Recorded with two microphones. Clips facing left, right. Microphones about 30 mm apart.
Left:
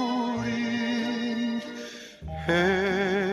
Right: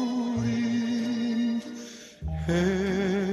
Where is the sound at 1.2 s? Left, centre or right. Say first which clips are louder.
Right 1 dB; centre.